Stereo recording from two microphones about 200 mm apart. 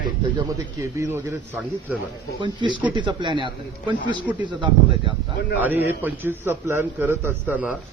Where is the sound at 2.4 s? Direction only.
25° right (ahead or behind).